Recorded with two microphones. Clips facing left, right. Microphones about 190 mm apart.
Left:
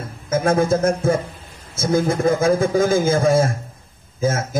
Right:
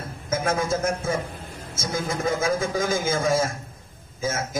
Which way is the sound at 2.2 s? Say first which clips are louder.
Left 7 dB; 55° left (ahead or behind).